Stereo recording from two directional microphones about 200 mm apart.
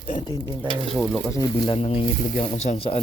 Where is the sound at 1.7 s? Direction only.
30° left (ahead or behind).